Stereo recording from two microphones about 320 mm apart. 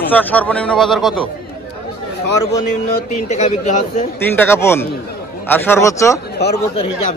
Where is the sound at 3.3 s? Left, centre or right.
Left.